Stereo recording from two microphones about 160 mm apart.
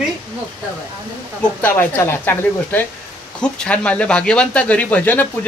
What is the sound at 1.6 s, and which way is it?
Speech, 15° left (ahead or behind).